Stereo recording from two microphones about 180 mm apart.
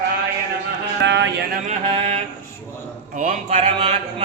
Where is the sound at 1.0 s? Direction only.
75° right (ahead or behind).